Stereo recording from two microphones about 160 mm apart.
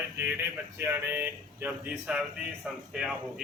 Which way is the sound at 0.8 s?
15° right (ahead or behind).